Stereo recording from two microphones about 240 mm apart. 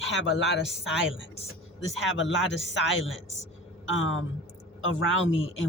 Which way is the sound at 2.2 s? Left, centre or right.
Left.